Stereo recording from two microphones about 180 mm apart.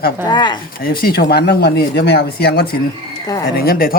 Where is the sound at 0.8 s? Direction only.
55° left (ahead or behind).